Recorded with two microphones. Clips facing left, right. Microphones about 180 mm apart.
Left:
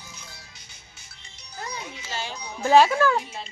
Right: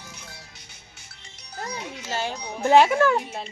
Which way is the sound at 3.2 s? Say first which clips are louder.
Right 4 dB; 60° right (ahead or behind).